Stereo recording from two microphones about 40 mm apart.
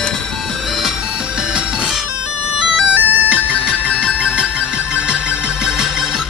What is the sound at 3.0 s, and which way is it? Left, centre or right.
Music, right.